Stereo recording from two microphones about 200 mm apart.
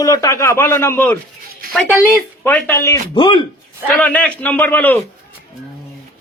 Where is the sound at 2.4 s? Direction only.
10° left (ahead or behind).